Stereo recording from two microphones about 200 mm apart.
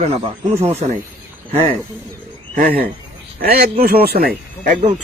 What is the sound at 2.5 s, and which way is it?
Speech, 45° right (ahead or behind).